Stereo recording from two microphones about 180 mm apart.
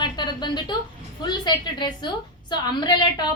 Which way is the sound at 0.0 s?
25° left (ahead or behind).